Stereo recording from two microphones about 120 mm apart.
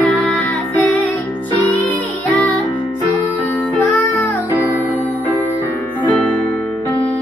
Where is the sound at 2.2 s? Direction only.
15° left (ahead or behind).